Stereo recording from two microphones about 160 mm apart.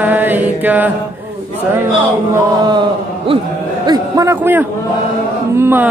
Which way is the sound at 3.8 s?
25° right (ahead or behind).